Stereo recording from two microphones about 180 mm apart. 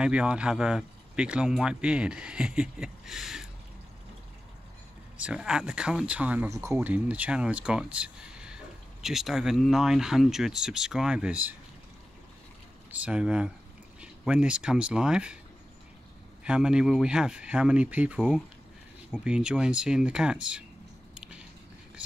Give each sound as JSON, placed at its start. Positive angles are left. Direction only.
{"t": 0.0, "sound": "speech", "side_deg": -5}
{"t": 5.1, "sound": "speech", "side_deg": -5}
{"t": 12.9, "sound": "speech", "side_deg": -5}
{"t": 16.4, "sound": "speech", "side_deg": -5}
{"t": 21.1, "sound": "biting", "side_deg": -5}